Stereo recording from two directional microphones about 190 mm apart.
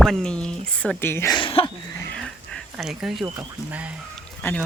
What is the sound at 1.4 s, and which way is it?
Speech, 30° left (ahead or behind).